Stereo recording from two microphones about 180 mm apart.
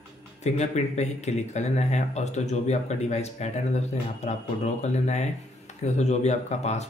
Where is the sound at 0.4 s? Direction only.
40° left (ahead or behind).